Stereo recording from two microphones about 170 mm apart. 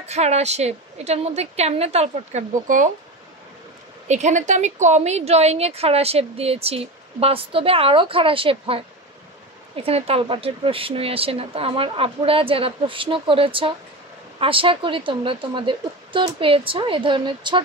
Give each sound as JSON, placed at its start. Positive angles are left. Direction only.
{"t": 0.0, "sound": "a woman's voice", "side_deg": -40}
{"t": 4.1, "sound": "a woman's voice", "side_deg": -45}